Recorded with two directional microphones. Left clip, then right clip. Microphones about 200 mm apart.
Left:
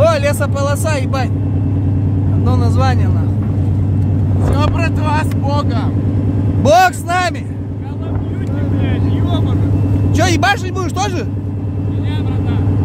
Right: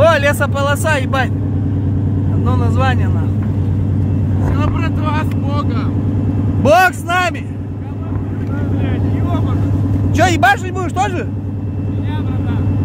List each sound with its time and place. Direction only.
0.0 s speech: centre (ahead or behind)
2.4 s speech: 10° left (ahead or behind)
4.6 s speech: 10° left (ahead or behind)
6.6 s speech: 5° left (ahead or behind)
8.8 s speech: 5° left (ahead or behind)
10.1 s speech: 15° left (ahead or behind)